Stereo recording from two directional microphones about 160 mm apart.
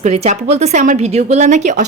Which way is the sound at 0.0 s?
45° right (ahead or behind).